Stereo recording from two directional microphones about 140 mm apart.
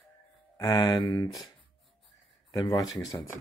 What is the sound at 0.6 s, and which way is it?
Speech, 25° left (ahead or behind).